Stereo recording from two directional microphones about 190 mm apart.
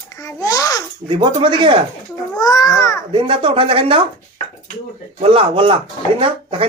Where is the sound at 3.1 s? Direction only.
25° right (ahead or behind).